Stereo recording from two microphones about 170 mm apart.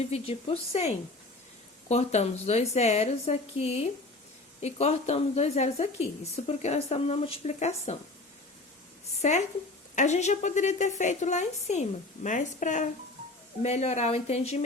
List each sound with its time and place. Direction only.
0.0 s a woman's voice: 35° left (ahead or behind)
9.1 s a woman's voice: 40° left (ahead or behind)